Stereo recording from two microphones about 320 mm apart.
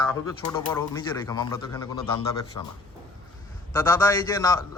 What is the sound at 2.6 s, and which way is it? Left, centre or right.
Speech, left.